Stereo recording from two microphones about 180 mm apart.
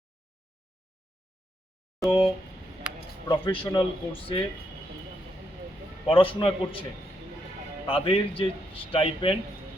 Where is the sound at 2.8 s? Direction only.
5° right (ahead or behind).